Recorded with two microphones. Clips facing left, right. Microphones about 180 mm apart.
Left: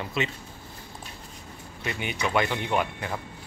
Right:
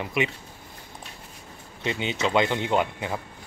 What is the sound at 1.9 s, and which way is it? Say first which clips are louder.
Speech: right 4 dB; 20° right (ahead or behind).